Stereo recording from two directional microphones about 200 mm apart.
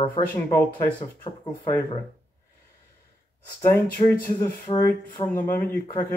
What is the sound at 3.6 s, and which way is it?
Speech, 10° left (ahead or behind).